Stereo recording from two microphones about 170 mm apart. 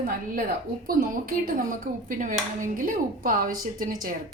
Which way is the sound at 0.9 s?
55° right (ahead or behind).